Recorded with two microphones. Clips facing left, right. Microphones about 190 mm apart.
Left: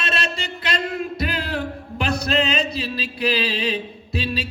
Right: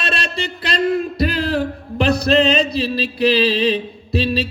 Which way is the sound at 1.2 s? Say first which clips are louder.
Right 7 dB; 35° right (ahead or behind).